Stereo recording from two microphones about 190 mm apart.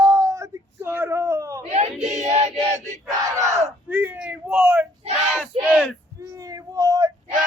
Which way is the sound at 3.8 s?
10° right (ahead or behind).